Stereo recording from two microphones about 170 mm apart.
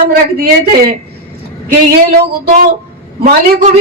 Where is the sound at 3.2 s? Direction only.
50° right (ahead or behind).